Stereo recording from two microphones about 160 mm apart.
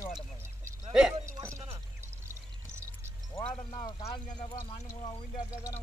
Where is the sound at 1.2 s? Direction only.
20° right (ahead or behind).